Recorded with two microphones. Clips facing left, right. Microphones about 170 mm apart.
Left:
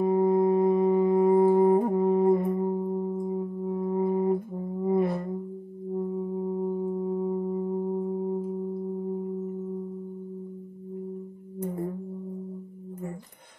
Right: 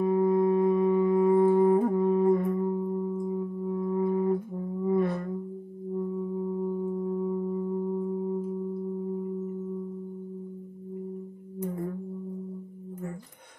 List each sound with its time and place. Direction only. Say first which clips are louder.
0.0 s music: left 1 dB; 35° left (ahead or behind)
4.8 s a sound: left 1 dB; 35° left (ahead or behind)
6.6 s singing bowl: left 1 dB; 35° left (ahead or behind)